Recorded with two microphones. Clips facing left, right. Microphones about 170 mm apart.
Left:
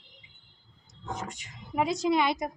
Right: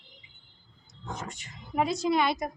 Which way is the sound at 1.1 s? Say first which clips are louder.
Left 2 dB; 10° left (ahead or behind).